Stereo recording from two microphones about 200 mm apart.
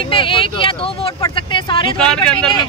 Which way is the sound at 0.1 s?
25° left (ahead or behind).